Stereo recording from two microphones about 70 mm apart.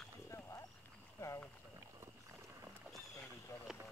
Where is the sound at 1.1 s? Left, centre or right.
Left.